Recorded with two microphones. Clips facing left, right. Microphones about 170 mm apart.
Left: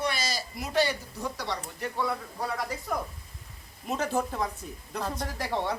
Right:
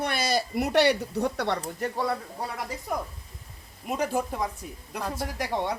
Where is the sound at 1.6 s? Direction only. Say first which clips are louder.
Right 3 dB; 40° right (ahead or behind).